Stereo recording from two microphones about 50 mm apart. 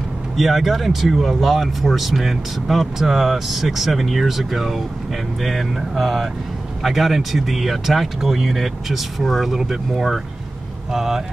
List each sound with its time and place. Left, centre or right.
0.4 s speech: centre